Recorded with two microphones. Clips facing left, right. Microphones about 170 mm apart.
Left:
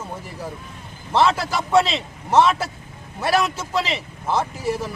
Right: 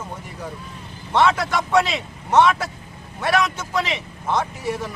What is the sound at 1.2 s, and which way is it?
Speech, 30° left (ahead or behind).